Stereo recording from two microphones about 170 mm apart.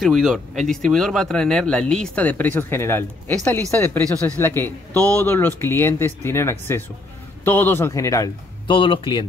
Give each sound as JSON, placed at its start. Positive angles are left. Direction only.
{"t": 0.0, "sound": "speech", "side_deg": 0}